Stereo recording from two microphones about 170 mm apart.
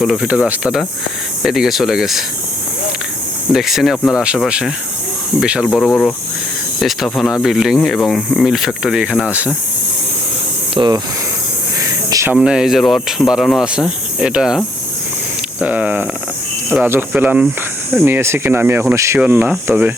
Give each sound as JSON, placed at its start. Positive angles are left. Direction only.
{"t": 0.0, "sound": "speech", "side_deg": 0}
{"t": 3.5, "sound": "speech", "side_deg": 0}
{"t": 10.8, "sound": "speech", "side_deg": -25}
{"t": 11.8, "sound": "a sound", "side_deg": -15}
{"t": 12.4, "sound": "speech", "side_deg": -5}
{"t": 15.6, "sound": "speech", "side_deg": -10}